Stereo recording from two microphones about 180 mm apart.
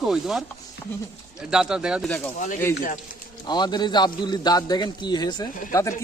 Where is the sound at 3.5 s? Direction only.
25° left (ahead or behind).